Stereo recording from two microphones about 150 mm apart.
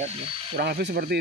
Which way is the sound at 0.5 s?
85° right.